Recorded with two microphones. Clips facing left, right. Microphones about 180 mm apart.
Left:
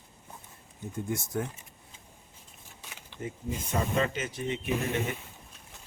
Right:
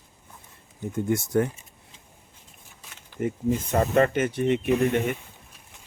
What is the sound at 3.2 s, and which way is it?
Speech, 65° right (ahead or behind).